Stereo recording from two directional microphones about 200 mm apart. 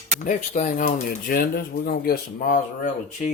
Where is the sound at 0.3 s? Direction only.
40° left (ahead or behind).